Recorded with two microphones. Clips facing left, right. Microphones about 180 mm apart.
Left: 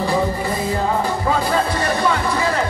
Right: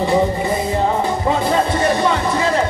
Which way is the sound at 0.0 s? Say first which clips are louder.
Right 3 dB; 25° right (ahead or behind).